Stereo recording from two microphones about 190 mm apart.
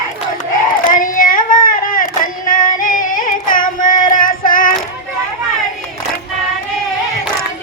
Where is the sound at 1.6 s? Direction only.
45° left (ahead or behind).